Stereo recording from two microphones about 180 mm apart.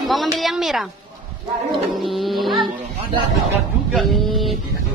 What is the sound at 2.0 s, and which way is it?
Cat, centre (ahead or behind).